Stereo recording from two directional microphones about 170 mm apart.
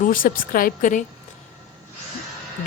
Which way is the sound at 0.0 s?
55° left (ahead or behind).